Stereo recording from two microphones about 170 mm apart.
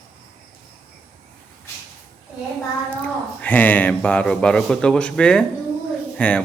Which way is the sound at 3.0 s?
10° left (ahead or behind).